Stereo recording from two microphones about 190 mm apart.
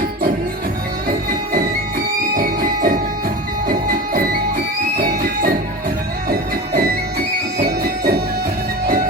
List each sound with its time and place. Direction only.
1.0 s music: 50° right (ahead or behind)